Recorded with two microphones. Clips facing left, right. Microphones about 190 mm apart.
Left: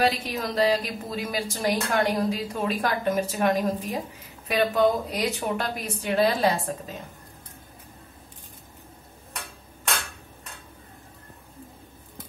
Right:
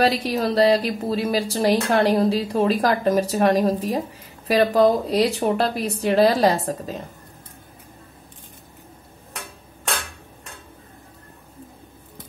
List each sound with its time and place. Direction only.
0.0 s a woman's voice: 35° right (ahead or behind)